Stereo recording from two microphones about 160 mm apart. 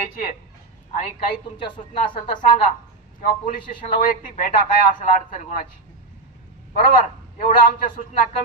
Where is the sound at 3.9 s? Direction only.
55° left (ahead or behind).